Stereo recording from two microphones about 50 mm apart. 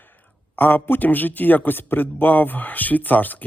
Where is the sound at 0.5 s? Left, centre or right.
Left.